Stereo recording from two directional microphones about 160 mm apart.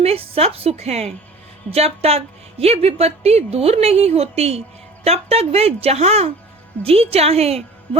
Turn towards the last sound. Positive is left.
turn(degrees=-40)  # may be behind; listen again after turning